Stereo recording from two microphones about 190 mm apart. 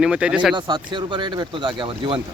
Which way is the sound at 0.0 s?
5° right (ahead or behind).